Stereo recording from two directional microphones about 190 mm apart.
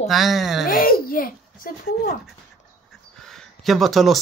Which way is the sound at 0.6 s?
50° left (ahead or behind).